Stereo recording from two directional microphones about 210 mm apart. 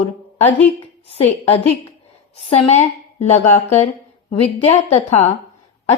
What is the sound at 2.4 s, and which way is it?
A woman's voice, 30° left (ahead or behind).